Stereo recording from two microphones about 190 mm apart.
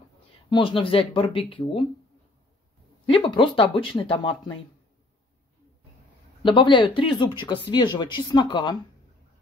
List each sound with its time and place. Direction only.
0.5 s speech: 25° left (ahead or behind)
3.1 s speech: 25° left (ahead or behind)
6.4 s speech: 25° left (ahead or behind)